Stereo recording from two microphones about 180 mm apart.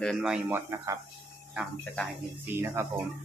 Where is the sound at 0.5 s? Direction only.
15° right (ahead or behind).